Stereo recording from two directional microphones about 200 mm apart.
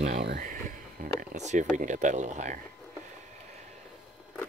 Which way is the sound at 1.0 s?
35° right (ahead or behind).